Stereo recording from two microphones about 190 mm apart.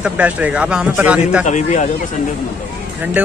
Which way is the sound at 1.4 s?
40° left (ahead or behind).